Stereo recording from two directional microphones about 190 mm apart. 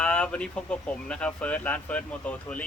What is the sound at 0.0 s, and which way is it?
Speech, 5° left (ahead or behind).